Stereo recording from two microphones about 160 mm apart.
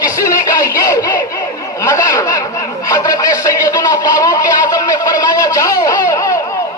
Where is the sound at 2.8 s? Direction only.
20° left (ahead or behind).